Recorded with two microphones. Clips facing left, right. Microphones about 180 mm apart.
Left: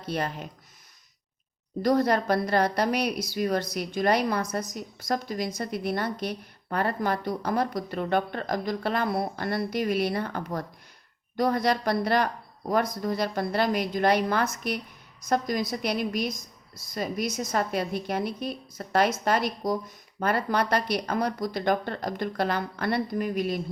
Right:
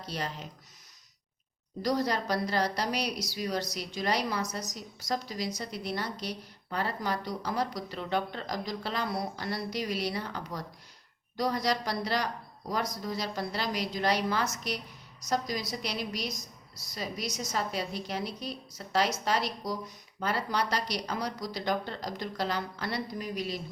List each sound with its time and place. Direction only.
0.0 s a woman's voice: 55° left (ahead or behind)
1.8 s a woman's voice: 55° left (ahead or behind)